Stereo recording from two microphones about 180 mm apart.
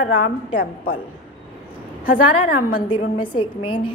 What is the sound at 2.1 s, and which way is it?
Speech, 55° left (ahead or behind).